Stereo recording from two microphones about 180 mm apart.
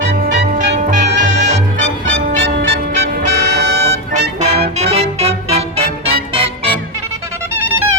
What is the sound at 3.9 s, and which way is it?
Music, 40° right (ahead or behind).